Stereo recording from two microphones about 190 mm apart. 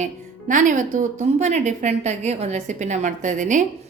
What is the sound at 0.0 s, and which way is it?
A woman's voice, 40° right (ahead or behind).